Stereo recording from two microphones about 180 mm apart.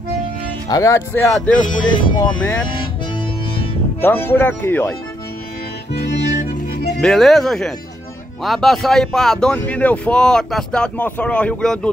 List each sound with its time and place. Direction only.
0.7 s speech: 20° left (ahead or behind)
1.9 s speech: 25° left (ahead or behind)
4.0 s speech: 10° left (ahead or behind)
7.0 s speech: centre (ahead or behind)